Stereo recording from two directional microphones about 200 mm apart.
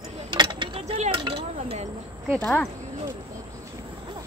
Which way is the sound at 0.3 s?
20° right (ahead or behind).